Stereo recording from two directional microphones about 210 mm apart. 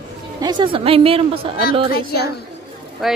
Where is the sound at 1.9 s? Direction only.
50° left (ahead or behind).